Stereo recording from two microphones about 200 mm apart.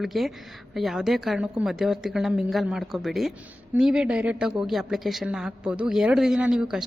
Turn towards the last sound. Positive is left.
turn(degrees=-5)  # may be behind; listen again after turning